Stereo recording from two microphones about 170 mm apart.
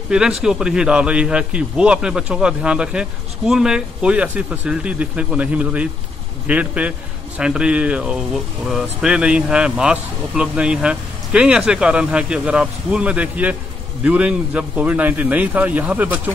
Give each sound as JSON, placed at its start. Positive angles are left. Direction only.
{"t": 0.4, "sound": "a man's voice", "side_deg": -5}